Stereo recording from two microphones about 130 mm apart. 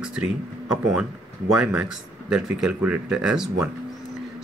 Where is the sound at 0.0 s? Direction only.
5° right (ahead or behind).